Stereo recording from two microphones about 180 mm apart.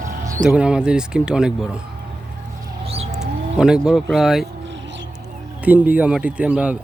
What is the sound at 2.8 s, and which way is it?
Bird, 35° right (ahead or behind).